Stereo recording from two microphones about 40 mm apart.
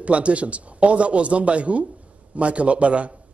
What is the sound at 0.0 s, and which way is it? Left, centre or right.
A man's voice, right.